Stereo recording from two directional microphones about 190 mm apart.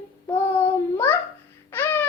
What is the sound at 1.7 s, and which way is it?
Babbling, 10° left (ahead or behind).